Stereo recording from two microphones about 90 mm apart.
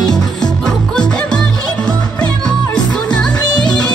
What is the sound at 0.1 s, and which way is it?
Music, 5° left (ahead or behind).